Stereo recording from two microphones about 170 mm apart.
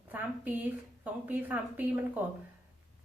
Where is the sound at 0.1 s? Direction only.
10° right (ahead or behind).